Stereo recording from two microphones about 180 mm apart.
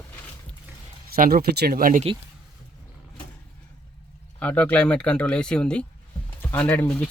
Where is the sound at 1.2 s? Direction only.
55° right (ahead or behind).